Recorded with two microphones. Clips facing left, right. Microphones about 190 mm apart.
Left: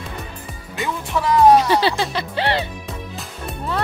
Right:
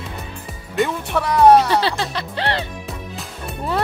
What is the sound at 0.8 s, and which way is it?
Music, centre (ahead or behind).